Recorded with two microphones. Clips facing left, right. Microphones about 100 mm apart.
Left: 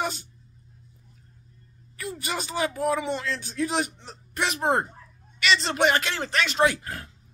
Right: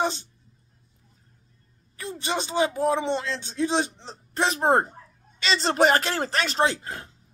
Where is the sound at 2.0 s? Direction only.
30° right (ahead or behind).